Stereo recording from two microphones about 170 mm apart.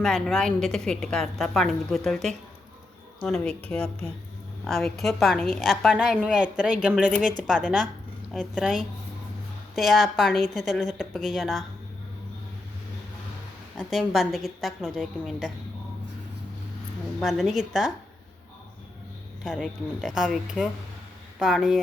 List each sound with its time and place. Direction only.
0.0 s a woman's voice: centre (ahead or behind)
7.2 s speech: 50° right (ahead or behind)
7.4 s a woman's voice: centre (ahead or behind)
13.7 s a woman's voice: centre (ahead or behind)
17.2 s a woman's voice: centre (ahead or behind)
19.5 s a woman's voice: centre (ahead or behind)